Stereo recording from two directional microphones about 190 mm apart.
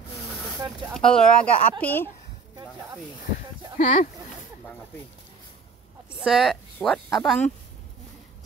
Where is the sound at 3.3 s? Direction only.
45° left (ahead or behind).